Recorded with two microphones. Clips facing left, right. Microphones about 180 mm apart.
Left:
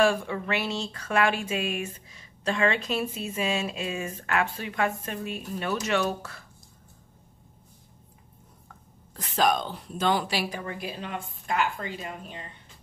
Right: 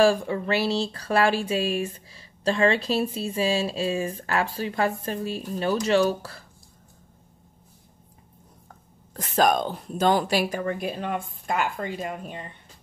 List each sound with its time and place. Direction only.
0.0 s speech: 35° right (ahead or behind)
8.6 s speech: 45° right (ahead or behind)